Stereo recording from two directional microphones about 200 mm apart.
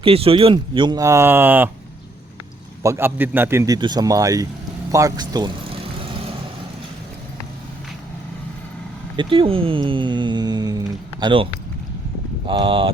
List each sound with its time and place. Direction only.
0.0 s speech: 30° right (ahead or behind); by 1.7 s 10° right (ahead or behind)
2.8 s speech: 10° right (ahead or behind)
4.9 s vehicle: 15° right (ahead or behind)
9.1 s speech: 25° right (ahead or behind)
12.5 s speech: 25° right (ahead or behind)